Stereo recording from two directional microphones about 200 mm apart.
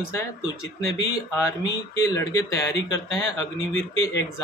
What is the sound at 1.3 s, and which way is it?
Speech, 15° left (ahead or behind).